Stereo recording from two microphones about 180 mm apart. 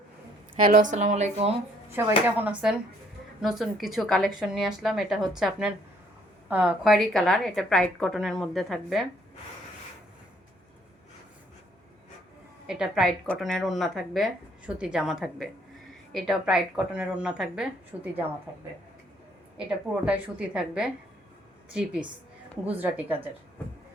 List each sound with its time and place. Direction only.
0.7 s speech: 45° right (ahead or behind)
1.9 s a woman's voice: 10° right (ahead or behind)
12.6 s a woman's voice: 5° right (ahead or behind)
19.5 s a woman's voice: 5° right (ahead or behind)